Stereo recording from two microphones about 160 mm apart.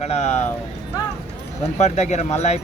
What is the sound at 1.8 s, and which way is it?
Speech, 45° left (ahead or behind).